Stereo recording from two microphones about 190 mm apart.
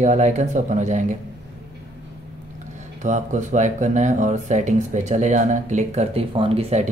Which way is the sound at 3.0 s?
40° right (ahead or behind).